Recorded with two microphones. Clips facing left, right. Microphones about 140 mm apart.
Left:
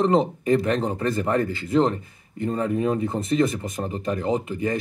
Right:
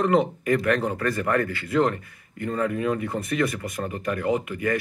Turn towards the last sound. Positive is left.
turn(degrees=25)  # may be behind; listen again after turning